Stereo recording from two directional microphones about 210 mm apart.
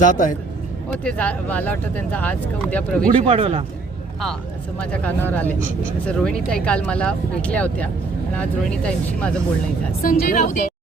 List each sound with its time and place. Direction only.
0.0 s a woman's voice: 40° left (ahead or behind)
1.0 s speech: 5° left (ahead or behind)
3.1 s speech: 30° right (ahead or behind)
4.8 s speech: 5° left (ahead or behind)
10.0 s a woman's voice: 40° left (ahead or behind)